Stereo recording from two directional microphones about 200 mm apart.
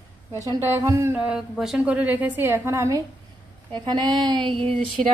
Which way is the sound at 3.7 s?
20° right (ahead or behind).